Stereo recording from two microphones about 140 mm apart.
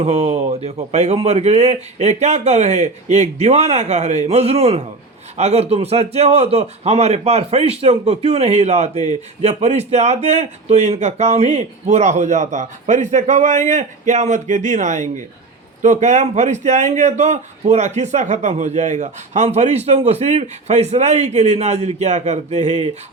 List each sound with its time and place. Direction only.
0.0 s a man's voice: 50° right (ahead or behind)